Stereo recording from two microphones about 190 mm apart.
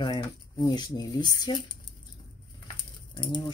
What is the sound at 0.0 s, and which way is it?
Speech, 20° left (ahead or behind).